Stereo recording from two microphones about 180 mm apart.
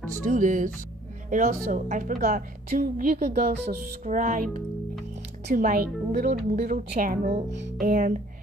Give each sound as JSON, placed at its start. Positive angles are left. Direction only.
{"t": 0.1, "sound": "a woman's voice", "side_deg": -45}
{"t": 5.5, "sound": "a woman's voice", "side_deg": -55}